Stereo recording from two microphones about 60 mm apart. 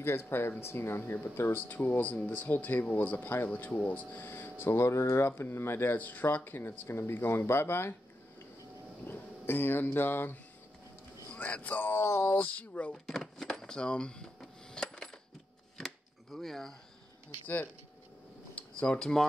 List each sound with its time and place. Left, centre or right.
0.0 s speech: left
4.2 s speech: left
5.9 s speech: left
9.0 s speech: left
12.9 s printer: centre
15.8 s a sound: centre
18.5 s a sound: centre